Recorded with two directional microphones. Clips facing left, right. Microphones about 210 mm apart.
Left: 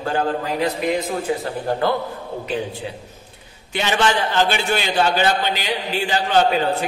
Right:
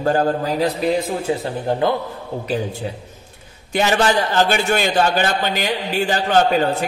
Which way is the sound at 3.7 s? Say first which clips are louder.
Right 3 dB; 40° right (ahead or behind).